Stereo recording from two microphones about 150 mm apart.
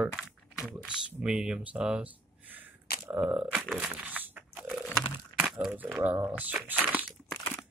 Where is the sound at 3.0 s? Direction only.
5° right (ahead or behind).